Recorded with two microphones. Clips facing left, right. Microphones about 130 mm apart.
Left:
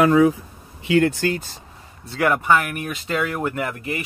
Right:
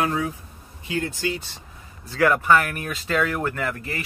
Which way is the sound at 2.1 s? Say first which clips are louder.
Even; 20° left (ahead or behind).